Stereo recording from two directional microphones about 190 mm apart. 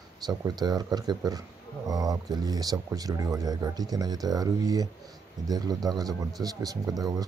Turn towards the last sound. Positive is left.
turn(degrees=-20)  # may be behind; listen again after turning